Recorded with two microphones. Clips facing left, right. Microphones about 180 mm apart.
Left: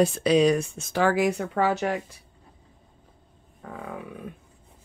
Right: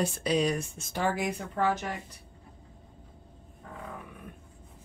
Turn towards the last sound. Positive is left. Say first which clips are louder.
# left 6 dB
turn(degrees=90)